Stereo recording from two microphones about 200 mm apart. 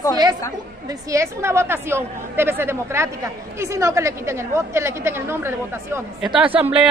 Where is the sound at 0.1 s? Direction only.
20° right (ahead or behind).